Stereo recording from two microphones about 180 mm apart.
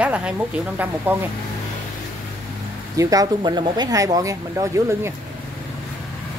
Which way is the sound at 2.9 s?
20° right (ahead or behind).